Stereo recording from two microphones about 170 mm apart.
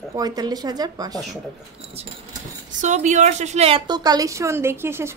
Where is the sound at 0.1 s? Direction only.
25° right (ahead or behind).